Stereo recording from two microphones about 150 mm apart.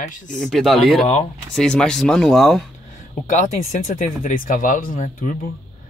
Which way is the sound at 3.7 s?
55° left (ahead or behind).